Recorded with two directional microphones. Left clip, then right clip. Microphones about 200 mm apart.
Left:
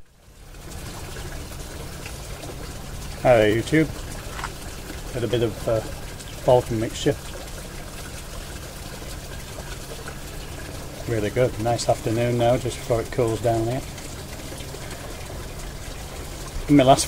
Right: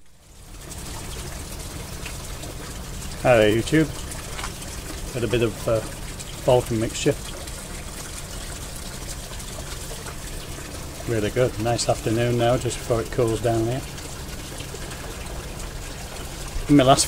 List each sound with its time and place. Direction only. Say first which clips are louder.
3.3 s speech: even; centre (ahead or behind)
5.3 s speech: right 1 dB; 5° right (ahead or behind)
11.1 s speech: even; centre (ahead or behind)
16.7 s speech: left 1 dB; centre (ahead or behind)